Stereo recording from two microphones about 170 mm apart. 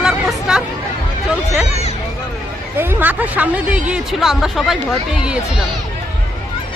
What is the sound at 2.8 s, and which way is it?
Speech, 10° right (ahead or behind).